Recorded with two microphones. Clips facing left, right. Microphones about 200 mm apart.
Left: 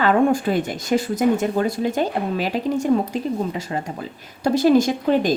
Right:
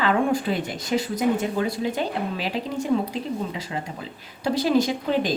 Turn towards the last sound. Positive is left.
turn(degrees=45)  # may be behind; listen again after turning